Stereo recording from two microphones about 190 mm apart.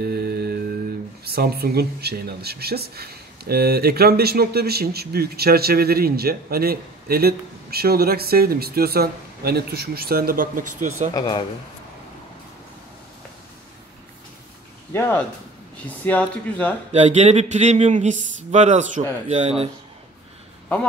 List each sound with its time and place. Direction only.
0.0 s music: 55° right (ahead or behind)
1.2 s speech: 55° right (ahead or behind)
11.1 s speech: 20° left (ahead or behind)
14.9 s speech: 10° left (ahead or behind)
16.9 s speech: 40° right (ahead or behind)